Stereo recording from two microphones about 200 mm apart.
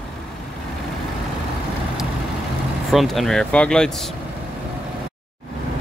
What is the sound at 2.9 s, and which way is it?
Speech, centre (ahead or behind).